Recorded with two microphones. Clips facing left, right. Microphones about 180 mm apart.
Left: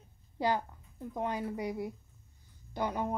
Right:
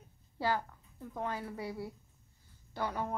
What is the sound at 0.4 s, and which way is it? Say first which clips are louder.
A woman's voice: left 2 dB; 20° left (ahead or behind).